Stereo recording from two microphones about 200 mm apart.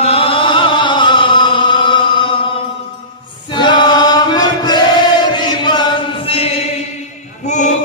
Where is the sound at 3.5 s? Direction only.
20° left (ahead or behind).